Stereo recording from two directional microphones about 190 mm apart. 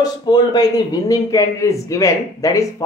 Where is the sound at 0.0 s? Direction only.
20° left (ahead or behind).